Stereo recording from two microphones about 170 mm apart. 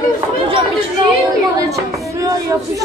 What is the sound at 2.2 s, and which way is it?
Speech, 20° right (ahead or behind).